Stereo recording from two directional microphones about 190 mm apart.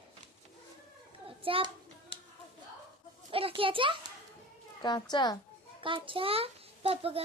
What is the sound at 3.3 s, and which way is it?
Speech, 30° right (ahead or behind).